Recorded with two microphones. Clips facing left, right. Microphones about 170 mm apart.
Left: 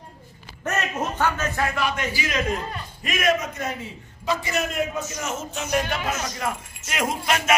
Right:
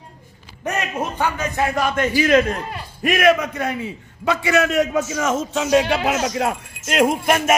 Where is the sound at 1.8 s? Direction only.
50° right (ahead or behind).